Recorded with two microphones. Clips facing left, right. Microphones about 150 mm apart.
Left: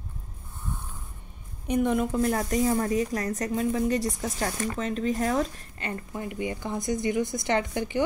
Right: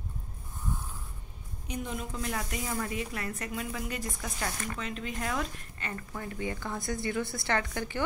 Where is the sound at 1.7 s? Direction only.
55° left (ahead or behind); by 6.2 s 30° left (ahead or behind).